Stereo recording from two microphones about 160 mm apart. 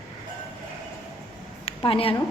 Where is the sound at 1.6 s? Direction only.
35° left (ahead or behind).